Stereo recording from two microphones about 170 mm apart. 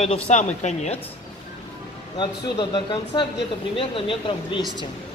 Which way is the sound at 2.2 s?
30° left (ahead or behind).